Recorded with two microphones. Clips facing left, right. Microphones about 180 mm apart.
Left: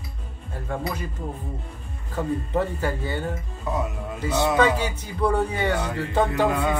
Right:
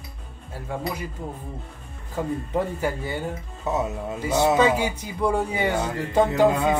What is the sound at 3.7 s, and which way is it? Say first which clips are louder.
Speech: right 2 dB; 25° right (ahead or behind).